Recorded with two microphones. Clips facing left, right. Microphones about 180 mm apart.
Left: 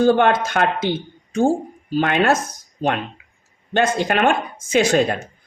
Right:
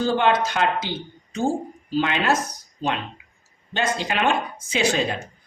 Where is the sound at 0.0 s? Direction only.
55° left (ahead or behind).